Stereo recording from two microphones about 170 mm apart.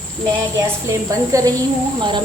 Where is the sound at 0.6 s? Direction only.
20° right (ahead or behind).